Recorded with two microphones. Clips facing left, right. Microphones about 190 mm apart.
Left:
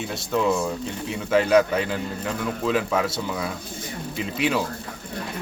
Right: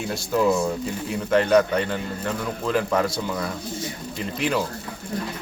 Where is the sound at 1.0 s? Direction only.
Centre (ahead or behind).